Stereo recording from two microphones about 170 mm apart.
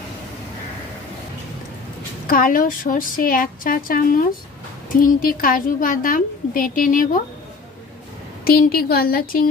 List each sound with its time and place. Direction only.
2.2 s a woman's voice: 55° left (ahead or behind)
8.5 s a woman's voice: 60° left (ahead or behind)